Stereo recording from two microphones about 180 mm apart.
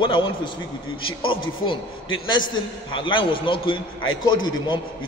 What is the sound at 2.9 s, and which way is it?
A man's voice, 30° left (ahead or behind).